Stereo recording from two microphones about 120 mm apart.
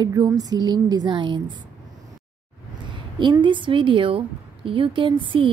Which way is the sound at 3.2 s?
40° right (ahead or behind).